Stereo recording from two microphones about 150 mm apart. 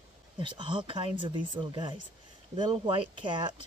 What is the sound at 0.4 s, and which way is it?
Speech, 35° right (ahead or behind).